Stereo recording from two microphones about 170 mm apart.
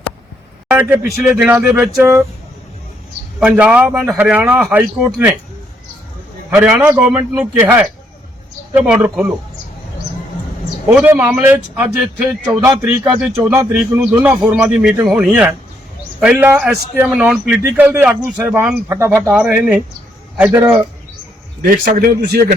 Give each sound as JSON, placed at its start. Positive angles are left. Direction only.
{"t": 0.7, "sound": "a man's voice", "side_deg": -10}
{"t": 3.4, "sound": "a man's voice", "side_deg": -5}
{"t": 6.5, "sound": "a man's voice", "side_deg": -10}
{"t": 10.8, "sound": "a man's voice", "side_deg": -10}
{"t": 21.6, "sound": "a man's voice", "side_deg": -55}